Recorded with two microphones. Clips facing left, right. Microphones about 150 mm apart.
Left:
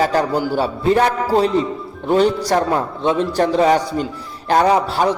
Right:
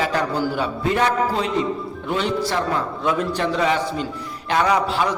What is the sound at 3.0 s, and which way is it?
Speech, 25° left (ahead or behind).